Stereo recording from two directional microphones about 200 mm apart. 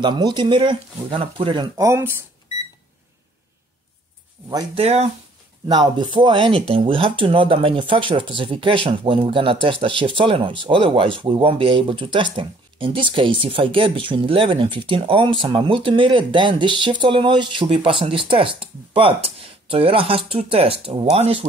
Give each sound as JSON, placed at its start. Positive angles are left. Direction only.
{"t": 0.0, "sound": "speech", "side_deg": -20}
{"t": 4.5, "sound": "speech", "side_deg": -20}
{"t": 4.8, "sound": "speech", "side_deg": -30}
{"t": 5.7, "sound": "speech", "side_deg": -20}